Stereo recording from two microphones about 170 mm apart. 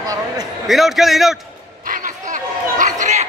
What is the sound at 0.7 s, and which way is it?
Speech, centre (ahead or behind).